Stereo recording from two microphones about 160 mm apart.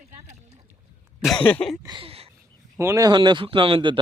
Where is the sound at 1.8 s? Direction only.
30° right (ahead or behind).